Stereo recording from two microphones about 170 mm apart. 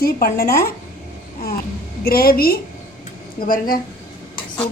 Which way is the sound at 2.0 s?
65° left (ahead or behind).